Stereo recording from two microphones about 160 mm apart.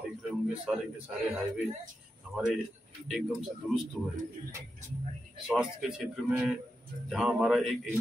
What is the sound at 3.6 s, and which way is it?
Speech, 5° right (ahead or behind).